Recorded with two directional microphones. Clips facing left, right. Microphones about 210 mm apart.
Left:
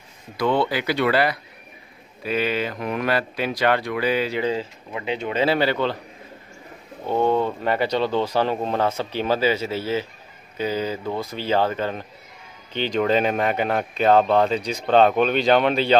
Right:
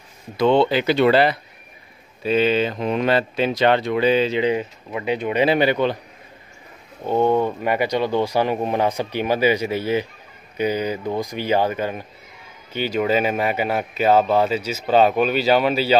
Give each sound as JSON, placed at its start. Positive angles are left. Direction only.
{"t": 0.4, "sound": "speech", "side_deg": -25}
{"t": 7.1, "sound": "speech", "side_deg": -15}